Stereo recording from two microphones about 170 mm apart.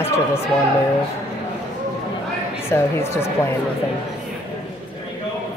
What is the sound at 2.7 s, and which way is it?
Speech, 15° left (ahead or behind).